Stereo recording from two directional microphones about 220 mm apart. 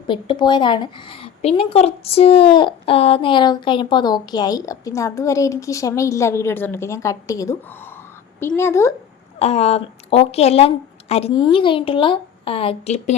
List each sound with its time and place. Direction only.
0.1 s speech: 20° left (ahead or behind)
8.5 s speech: 10° left (ahead or behind)
9.4 s speech: 30° left (ahead or behind)